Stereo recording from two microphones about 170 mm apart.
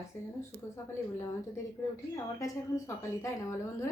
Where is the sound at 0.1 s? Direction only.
15° left (ahead or behind).